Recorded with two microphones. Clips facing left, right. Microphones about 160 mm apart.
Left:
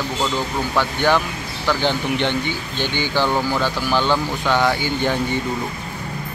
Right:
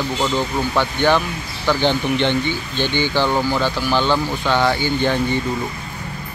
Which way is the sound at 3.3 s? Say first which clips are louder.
Right 1 dB; 15° right (ahead or behind).